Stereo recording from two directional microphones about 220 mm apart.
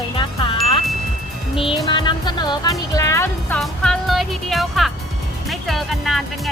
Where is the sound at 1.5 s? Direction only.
25° left (ahead or behind).